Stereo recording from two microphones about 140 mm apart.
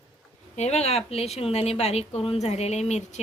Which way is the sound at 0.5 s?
50° left (ahead or behind).